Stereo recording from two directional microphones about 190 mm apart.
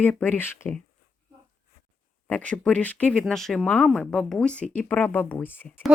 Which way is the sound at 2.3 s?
5° left (ahead or behind).